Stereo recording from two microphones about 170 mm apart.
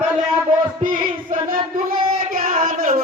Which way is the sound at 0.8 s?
50° right (ahead or behind).